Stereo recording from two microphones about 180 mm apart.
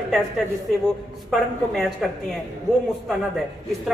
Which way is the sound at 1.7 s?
Centre (ahead or behind).